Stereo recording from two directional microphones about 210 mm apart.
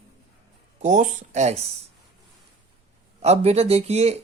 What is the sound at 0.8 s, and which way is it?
Speech, 35° right (ahead or behind).